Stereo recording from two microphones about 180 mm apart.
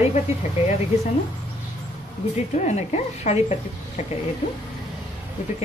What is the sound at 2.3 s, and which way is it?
A woman's voice, 40° left (ahead or behind).